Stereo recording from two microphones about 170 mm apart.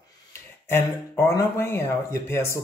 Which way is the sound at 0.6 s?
15° left (ahead or behind).